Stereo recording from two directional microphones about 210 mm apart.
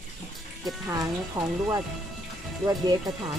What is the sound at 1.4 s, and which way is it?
Speech, 20° right (ahead or behind).